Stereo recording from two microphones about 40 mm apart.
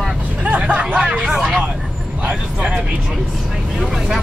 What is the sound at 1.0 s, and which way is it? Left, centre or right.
Hubbub, right.